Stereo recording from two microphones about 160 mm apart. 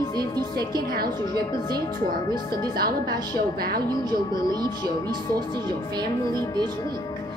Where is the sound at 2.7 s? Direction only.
70° right (ahead or behind).